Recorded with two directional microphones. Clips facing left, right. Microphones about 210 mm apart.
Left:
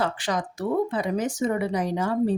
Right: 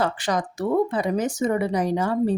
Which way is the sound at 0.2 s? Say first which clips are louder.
Right 3 dB; 40° right (ahead or behind).